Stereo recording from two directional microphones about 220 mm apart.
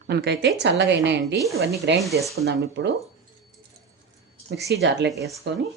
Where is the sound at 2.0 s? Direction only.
Centre (ahead or behind).